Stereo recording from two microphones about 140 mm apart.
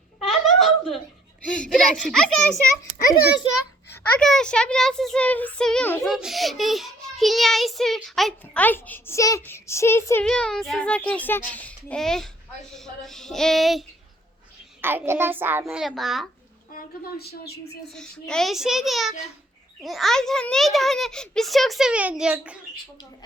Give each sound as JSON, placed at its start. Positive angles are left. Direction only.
{"t": 0.3, "sound": "laughter", "side_deg": 0}
{"t": 1.6, "sound": "a child's voice", "side_deg": 5}
{"t": 4.2, "sound": "a child's voice", "side_deg": 5}
{"t": 8.6, "sound": "a child's voice", "side_deg": 15}
{"t": 10.2, "sound": "a child's voice", "side_deg": 5}
{"t": 14.8, "sound": "a child's voice", "side_deg": -15}
{"t": 15.8, "sound": "a child's voice", "side_deg": 0}
{"t": 16.7, "sound": "speech", "side_deg": 90}
{"t": 17.9, "sound": "a child's voice", "side_deg": 5}